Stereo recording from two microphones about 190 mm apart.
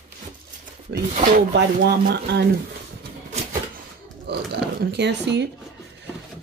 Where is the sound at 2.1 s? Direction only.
60° right (ahead or behind).